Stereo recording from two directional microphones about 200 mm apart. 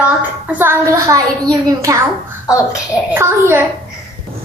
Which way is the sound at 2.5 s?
15° left (ahead or behind).